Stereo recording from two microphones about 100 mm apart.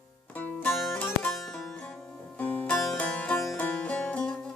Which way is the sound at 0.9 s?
15° left (ahead or behind).